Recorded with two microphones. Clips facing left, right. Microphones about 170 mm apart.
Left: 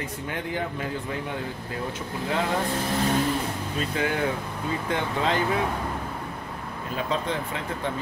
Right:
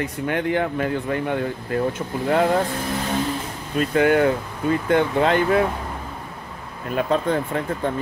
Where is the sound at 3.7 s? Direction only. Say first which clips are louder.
Right 11 dB; 60° right (ahead or behind).